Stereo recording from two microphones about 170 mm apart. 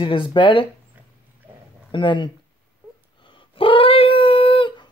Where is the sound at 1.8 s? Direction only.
30° left (ahead or behind).